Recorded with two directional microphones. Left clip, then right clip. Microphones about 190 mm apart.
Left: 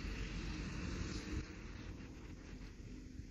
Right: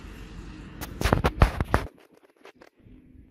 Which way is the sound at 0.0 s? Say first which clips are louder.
Right 2 dB; 50° right (ahead or behind).